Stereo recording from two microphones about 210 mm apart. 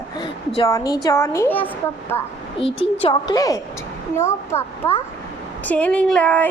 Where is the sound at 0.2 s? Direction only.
20° left (ahead or behind).